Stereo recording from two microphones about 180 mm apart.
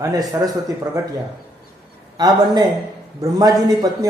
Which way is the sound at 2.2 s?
20° right (ahead or behind).